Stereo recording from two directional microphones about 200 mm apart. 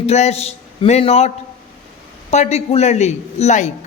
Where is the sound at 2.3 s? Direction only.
35° left (ahead or behind).